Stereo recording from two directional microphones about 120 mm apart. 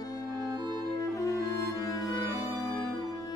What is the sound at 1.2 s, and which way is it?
Music, 25° left (ahead or behind).